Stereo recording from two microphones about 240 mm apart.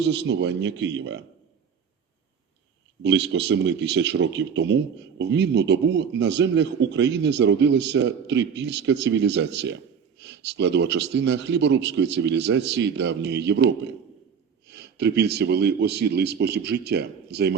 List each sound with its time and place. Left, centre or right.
0.0 s speech: right
3.0 s speech: right
14.7 s speech: right